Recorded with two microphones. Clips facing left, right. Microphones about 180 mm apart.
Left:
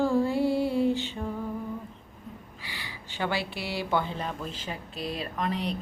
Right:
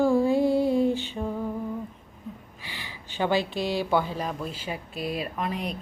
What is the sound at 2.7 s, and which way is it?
Gasp, 15° right (ahead or behind).